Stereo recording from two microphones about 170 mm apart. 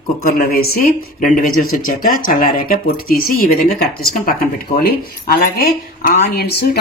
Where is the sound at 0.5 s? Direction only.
60° left (ahead or behind).